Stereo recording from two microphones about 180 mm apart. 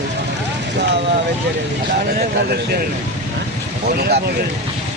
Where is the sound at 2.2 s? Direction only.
60° right (ahead or behind).